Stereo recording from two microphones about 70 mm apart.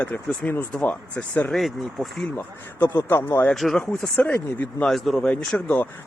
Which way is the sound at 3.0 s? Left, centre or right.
Left.